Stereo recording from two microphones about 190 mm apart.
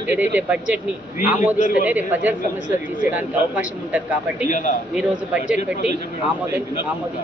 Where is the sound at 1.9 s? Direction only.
10° right (ahead or behind).